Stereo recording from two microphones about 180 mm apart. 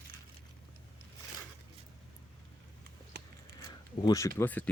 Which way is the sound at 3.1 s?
70° right (ahead or behind).